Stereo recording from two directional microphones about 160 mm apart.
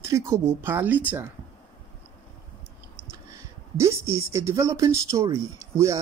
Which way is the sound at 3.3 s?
20° right (ahead or behind).